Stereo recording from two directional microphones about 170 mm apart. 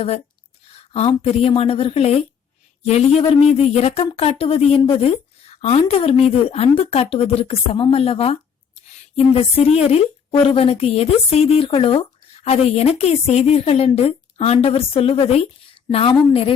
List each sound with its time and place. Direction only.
0.7 s a woman's voice: 35° left (ahead or behind)